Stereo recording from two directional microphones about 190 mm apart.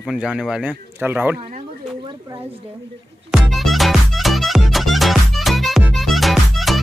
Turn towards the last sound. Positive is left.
turn(degrees=0)  # may be behind; listen again after turning